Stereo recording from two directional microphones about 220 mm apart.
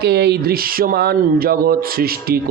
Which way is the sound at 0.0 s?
50° right (ahead or behind).